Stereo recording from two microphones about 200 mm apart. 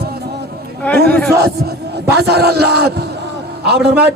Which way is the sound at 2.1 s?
55° right (ahead or behind).